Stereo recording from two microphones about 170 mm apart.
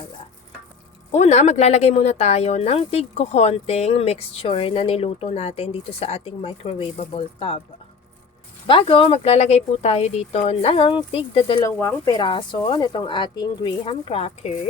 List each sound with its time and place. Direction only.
1.1 s speech: 40° left (ahead or behind)
8.6 s speech: 30° left (ahead or behind)
11.6 s speech: 15° left (ahead or behind); by 14.5 s 35° left (ahead or behind)